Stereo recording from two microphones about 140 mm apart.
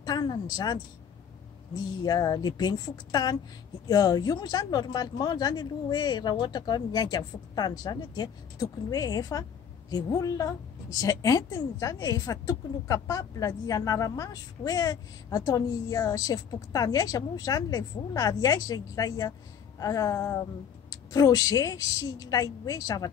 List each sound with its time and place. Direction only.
0.0 s a woman's voice: 30° left (ahead or behind)
2.0 s speech: 25° left (ahead or behind)